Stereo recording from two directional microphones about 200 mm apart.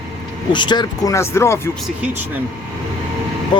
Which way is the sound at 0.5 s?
20° left (ahead or behind).